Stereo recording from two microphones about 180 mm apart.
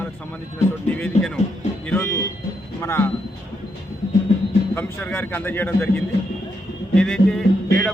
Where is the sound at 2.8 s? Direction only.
15° left (ahead or behind).